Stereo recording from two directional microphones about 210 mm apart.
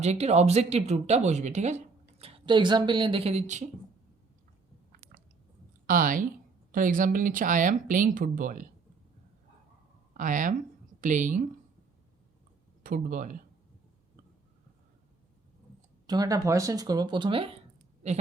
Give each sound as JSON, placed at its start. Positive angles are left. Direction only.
{"t": 0.0, "sound": "speech", "side_deg": -30}
{"t": 5.8, "sound": "speech", "side_deg": -40}
{"t": 10.2, "sound": "speech", "side_deg": -40}
{"t": 12.8, "sound": "speech", "side_deg": -40}
{"t": 16.0, "sound": "speech", "side_deg": -20}